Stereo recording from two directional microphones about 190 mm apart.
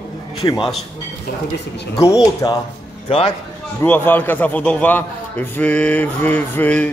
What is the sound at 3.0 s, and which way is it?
Speech, 30° left (ahead or behind).